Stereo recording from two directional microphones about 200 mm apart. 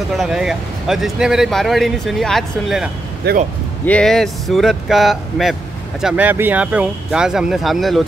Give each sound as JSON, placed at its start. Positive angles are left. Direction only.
{"t": 0.2, "sound": "speech", "side_deg": 0}
{"t": 3.3, "sound": "speech", "side_deg": -55}
{"t": 3.8, "sound": "speech", "side_deg": 5}